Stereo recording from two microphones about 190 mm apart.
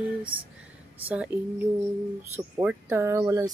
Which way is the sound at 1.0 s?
5° right (ahead or behind).